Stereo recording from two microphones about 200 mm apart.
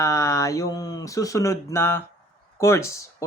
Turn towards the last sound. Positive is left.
turn(degrees=15)  # may be behind; listen again after turning